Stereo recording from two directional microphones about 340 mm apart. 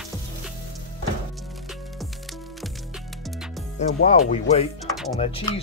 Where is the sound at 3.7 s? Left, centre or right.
Left.